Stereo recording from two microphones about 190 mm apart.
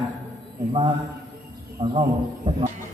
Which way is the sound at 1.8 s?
30° right (ahead or behind).